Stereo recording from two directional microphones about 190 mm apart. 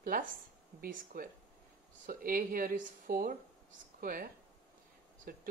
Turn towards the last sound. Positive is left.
turn(degrees=-50)  # may be behind; listen again after turning